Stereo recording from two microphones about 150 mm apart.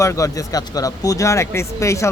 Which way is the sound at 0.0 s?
20° left (ahead or behind).